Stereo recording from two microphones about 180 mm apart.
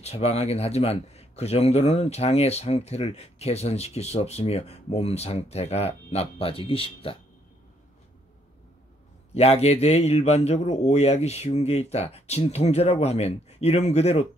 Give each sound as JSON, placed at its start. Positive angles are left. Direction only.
{"t": 0.0, "sound": "speech", "side_deg": 35}
{"t": 9.3, "sound": "speech", "side_deg": 35}